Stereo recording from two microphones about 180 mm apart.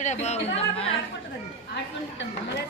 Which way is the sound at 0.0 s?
40° left (ahead or behind).